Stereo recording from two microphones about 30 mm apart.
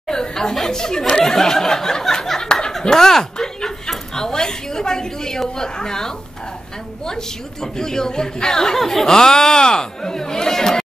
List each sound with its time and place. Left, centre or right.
0.1 s a sound: left
2.8 s snicker: left
3.9 s a sound: centre
5.6 s speech: left
8.7 s speech: centre
9.1 s speech: left